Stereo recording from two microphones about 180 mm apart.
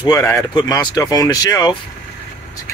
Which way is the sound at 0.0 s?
20° left (ahead or behind).